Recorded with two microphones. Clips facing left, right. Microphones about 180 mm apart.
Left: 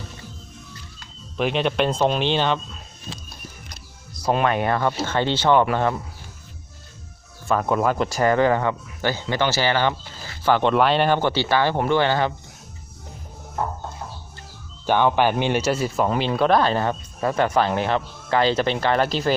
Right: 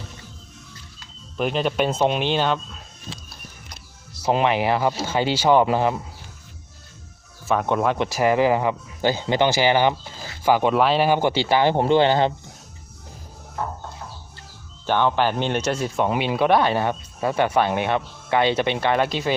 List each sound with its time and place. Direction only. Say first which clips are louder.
1.4 s speech: left 1 dB; centre (ahead or behind)
4.3 s speech: right 1 dB; 20° right (ahead or behind)
4.6 s speech: right 1 dB; 10° right (ahead or behind)
7.4 s speech: even; centre (ahead or behind); by 12.3 s 20° right (ahead or behind)
14.8 s speech: left 2 dB; 15° left (ahead or behind)
16.0 s speech: right 1 dB; 5° right (ahead or behind)
19.0 s speech: left 2 dB; centre (ahead or behind)